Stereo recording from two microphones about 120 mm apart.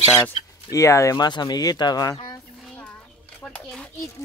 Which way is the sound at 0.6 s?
25° left (ahead or behind).